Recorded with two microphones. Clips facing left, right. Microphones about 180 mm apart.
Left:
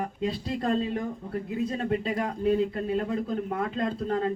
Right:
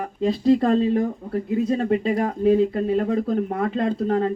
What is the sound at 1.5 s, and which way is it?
Speech, 55° right (ahead or behind).